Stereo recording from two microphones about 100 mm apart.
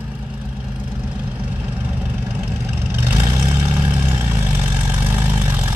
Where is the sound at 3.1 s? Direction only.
20° right (ahead or behind).